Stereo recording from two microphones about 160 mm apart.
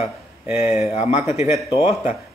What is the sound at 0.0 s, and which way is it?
Speech, 15° right (ahead or behind).